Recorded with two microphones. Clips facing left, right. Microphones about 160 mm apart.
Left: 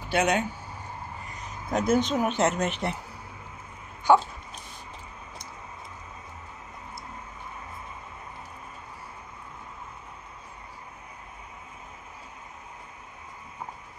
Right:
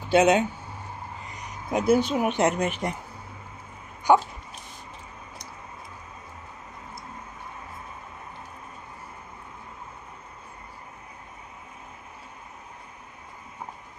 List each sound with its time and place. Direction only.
0.1 s speech: 20° right (ahead or behind)
1.7 s speech: 10° right (ahead or behind)
4.1 s speech: 15° right (ahead or behind)